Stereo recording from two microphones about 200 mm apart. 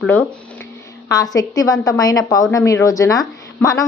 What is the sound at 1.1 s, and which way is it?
A woman's voice, 20° left (ahead or behind).